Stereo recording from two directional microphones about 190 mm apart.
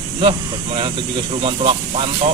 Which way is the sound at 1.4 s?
30° right (ahead or behind).